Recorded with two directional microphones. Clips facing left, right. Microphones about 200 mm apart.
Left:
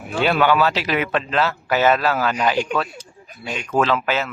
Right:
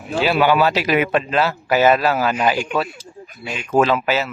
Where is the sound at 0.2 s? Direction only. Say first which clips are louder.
Right 1 dB; 5° right (ahead or behind).